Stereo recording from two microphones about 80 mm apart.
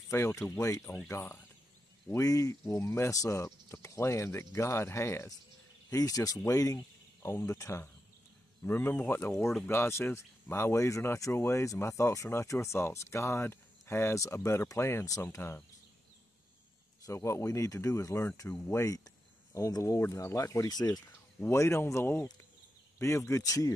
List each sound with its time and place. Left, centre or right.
0.1 s speech: left
5.9 s speech: left
8.6 s speech: left
17.0 s speech: left
20.7 s speech: left
21.4 s speech: left